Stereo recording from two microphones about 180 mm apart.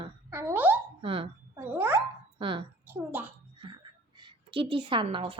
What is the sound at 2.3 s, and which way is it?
Speech, 30° right (ahead or behind).